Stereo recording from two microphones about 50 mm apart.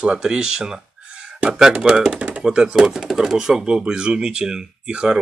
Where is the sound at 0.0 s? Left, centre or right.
Centre.